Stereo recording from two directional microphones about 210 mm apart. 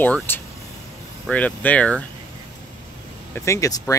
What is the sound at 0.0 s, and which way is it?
Speech, 10° left (ahead or behind).